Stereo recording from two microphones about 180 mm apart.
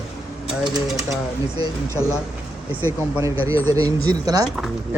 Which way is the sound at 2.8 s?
15° right (ahead or behind).